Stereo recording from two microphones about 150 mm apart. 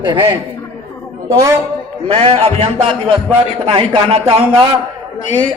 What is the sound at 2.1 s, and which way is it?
A man's voice, 40° right (ahead or behind).